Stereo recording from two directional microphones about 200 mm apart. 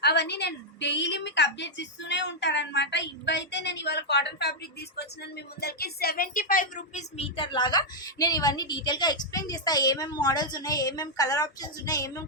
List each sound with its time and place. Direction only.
0.0 s a woman's voice: 55° left (ahead or behind); by 12.2 s 15° left (ahead or behind)